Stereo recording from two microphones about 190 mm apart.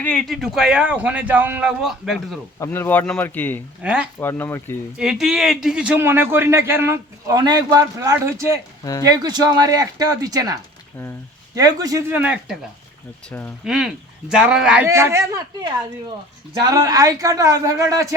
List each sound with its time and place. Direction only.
0.0 s a man's voice: 5° left (ahead or behind)
2.6 s speech: 10° left (ahead or behind)
3.8 s a man's voice: 5° right (ahead or behind)
4.2 s speech: 10° left (ahead or behind)
4.9 s a man's voice: centre (ahead or behind)
8.8 s speech: 20° left (ahead or behind)
9.0 s a man's voice: 20° right (ahead or behind)
13.3 s speech: 10° left (ahead or behind)
13.7 s a man's voice: 5° right (ahead or behind)
16.6 s a man's voice: 20° right (ahead or behind)